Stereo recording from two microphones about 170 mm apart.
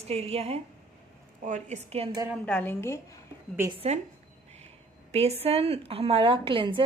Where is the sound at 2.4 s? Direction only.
10° left (ahead or behind).